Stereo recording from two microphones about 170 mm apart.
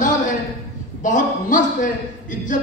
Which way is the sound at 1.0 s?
50° left (ahead or behind).